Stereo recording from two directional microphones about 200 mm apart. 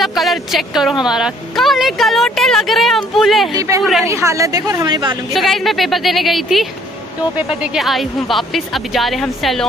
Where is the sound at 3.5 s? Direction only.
15° right (ahead or behind).